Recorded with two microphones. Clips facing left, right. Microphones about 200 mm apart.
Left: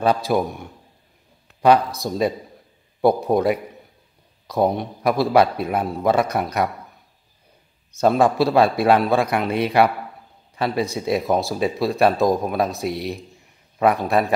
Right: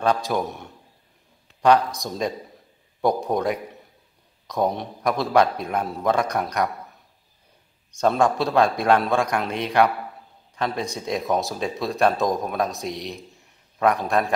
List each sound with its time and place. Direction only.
0.3 s a man's voice: centre (ahead or behind)
2.0 s a man's voice: 5° left (ahead or behind)
8.0 s a man's voice: 5° left (ahead or behind)